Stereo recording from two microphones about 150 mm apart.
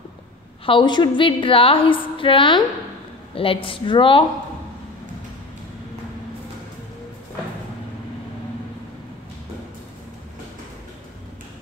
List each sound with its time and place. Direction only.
0.7 s a woman's voice: 30° left (ahead or behind)